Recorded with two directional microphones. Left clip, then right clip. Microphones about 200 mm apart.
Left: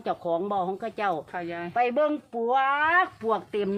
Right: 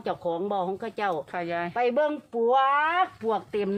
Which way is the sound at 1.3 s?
60° right (ahead or behind).